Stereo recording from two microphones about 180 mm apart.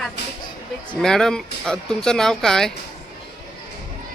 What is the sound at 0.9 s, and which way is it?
Speech, 5° left (ahead or behind).